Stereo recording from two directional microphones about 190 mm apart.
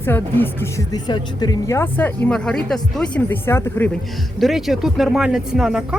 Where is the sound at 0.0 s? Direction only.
10° left (ahead or behind).